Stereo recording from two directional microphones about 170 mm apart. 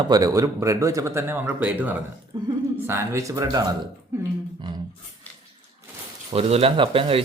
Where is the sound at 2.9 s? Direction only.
15° right (ahead or behind).